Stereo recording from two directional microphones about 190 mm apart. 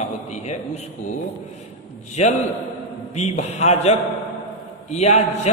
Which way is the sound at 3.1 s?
35° left (ahead or behind).